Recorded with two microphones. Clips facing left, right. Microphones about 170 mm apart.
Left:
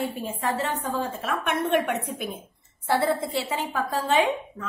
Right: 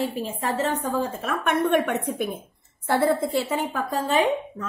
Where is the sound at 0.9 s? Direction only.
45° right (ahead or behind).